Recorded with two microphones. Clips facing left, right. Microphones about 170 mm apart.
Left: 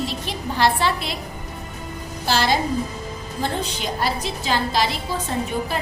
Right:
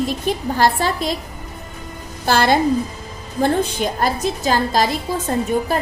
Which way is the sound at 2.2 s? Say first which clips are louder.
Right 5 dB; 55° right (ahead or behind).